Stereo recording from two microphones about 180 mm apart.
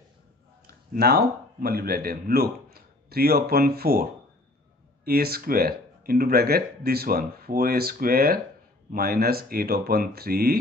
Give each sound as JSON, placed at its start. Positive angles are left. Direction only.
{"t": 0.7, "sound": "speech", "side_deg": -60}